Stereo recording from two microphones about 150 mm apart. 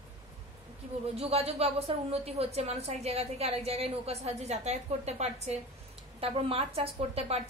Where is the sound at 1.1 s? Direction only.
40° right (ahead or behind).